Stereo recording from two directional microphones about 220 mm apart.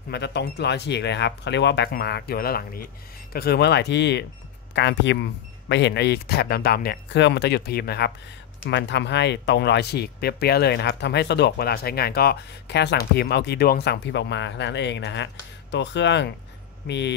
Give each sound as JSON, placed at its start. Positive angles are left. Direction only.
{"t": 0.1, "sound": "speech", "side_deg": 50}